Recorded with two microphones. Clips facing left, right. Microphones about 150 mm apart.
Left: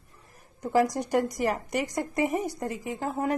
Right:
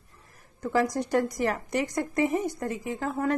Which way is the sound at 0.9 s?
15° left (ahead or behind).